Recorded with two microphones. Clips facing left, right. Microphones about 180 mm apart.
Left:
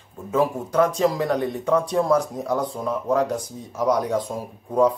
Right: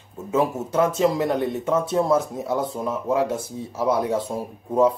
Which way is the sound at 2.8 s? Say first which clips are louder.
Left 1 dB; 5° right (ahead or behind).